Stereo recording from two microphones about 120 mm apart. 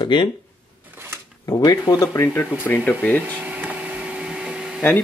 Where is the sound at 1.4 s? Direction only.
25° left (ahead or behind).